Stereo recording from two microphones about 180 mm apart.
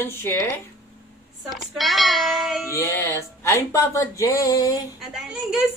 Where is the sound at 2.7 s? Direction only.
15° left (ahead or behind).